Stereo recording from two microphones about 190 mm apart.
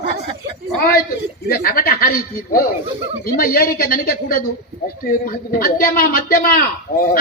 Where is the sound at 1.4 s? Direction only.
50° left (ahead or behind).